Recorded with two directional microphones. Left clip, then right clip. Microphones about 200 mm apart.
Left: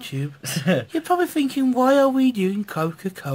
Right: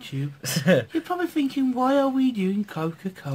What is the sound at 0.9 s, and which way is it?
Speech, 50° left (ahead or behind).